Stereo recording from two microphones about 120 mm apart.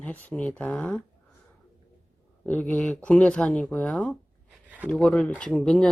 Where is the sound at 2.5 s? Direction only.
10° left (ahead or behind).